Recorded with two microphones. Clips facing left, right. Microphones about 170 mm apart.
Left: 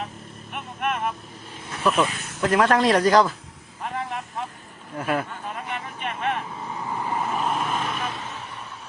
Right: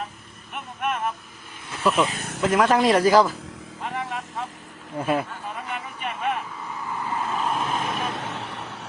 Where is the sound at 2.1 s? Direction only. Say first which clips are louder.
Right 4 dB; 55° right (ahead or behind).